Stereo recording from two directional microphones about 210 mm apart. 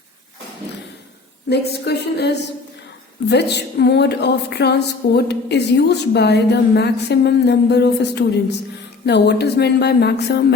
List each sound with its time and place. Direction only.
1.5 s a woman's voice: 50° left (ahead or behind)